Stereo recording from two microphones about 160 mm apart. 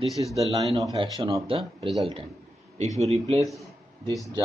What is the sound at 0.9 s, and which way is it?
Speech, 30° right (ahead or behind).